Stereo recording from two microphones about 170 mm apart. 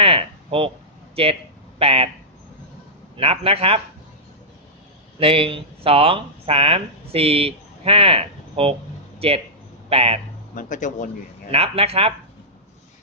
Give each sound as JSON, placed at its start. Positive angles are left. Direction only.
{"t": 0.0, "sound": "a sound", "side_deg": -35}
{"t": 1.1, "sound": "speech", "side_deg": -35}
{"t": 3.2, "sound": "speech", "side_deg": -35}
{"t": 5.2, "sound": "speech", "side_deg": -35}
{"t": 10.5, "sound": "speech", "side_deg": 50}
{"t": 11.5, "sound": "speech", "side_deg": -35}